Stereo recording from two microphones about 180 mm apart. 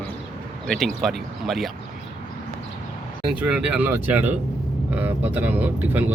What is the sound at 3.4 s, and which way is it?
Speech, 5° right (ahead or behind).